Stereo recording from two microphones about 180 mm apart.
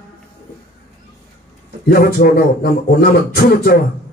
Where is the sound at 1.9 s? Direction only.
55° left (ahead or behind).